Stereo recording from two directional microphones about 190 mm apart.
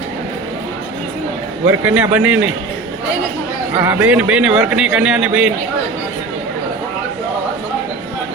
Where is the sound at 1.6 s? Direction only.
10° right (ahead or behind).